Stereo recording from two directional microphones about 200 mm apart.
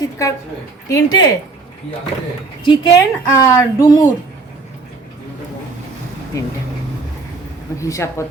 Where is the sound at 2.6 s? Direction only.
25° left (ahead or behind).